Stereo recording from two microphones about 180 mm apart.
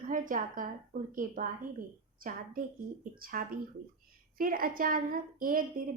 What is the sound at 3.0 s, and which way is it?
A woman's voice, 55° right (ahead or behind).